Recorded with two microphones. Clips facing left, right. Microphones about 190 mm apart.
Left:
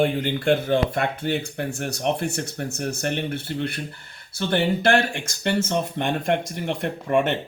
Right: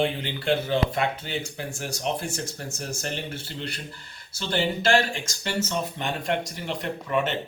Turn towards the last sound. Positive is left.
turn(degrees=50)  # may be behind; listen again after turning